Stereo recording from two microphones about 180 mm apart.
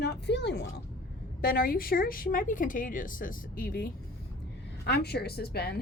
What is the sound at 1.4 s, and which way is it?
A woman's voice, 55° left (ahead or behind).